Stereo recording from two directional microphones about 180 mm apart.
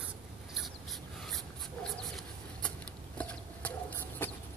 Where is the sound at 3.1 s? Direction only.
5° left (ahead or behind).